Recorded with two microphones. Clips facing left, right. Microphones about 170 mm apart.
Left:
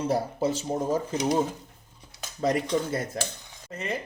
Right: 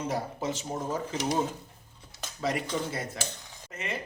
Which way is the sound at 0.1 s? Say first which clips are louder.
Left 6 dB; 35° left (ahead or behind).